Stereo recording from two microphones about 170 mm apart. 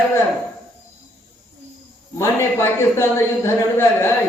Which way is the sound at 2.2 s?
15° left (ahead or behind).